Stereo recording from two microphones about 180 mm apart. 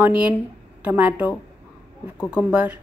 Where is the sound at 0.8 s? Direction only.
10° right (ahead or behind).